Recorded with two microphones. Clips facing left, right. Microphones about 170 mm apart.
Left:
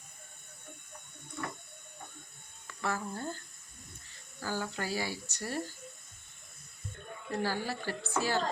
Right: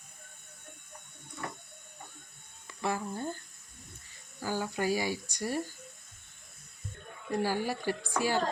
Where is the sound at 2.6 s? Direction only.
15° right (ahead or behind).